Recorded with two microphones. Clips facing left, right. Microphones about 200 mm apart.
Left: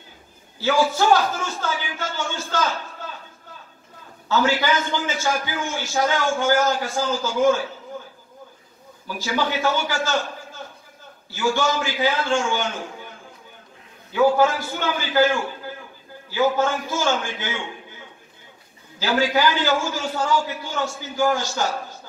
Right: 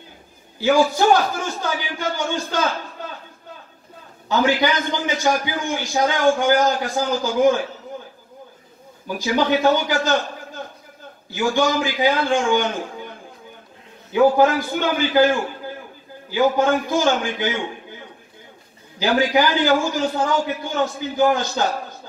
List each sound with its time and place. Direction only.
0.6 s a man's voice: 15° right (ahead or behind)
4.6 s a man's voice: 15° right (ahead or behind)
9.0 s a man's voice: 15° right (ahead or behind)
14.1 s a man's voice: 15° right (ahead or behind)
18.9 s a man's voice: 15° right (ahead or behind)
21.4 s a man's voice: 60° right (ahead or behind)